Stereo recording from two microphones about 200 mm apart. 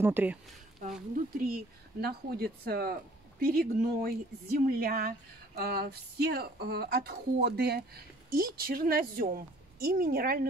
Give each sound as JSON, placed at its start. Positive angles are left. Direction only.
{"t": 0.0, "sound": "speech", "side_deg": -10}
{"t": 1.5, "sound": "speech", "side_deg": -50}